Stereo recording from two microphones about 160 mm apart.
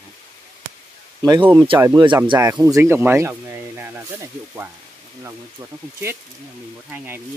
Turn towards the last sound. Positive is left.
turn(degrees=-15)  # may be behind; listen again after turning